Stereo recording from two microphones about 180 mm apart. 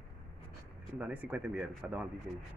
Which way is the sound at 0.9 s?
10° right (ahead or behind).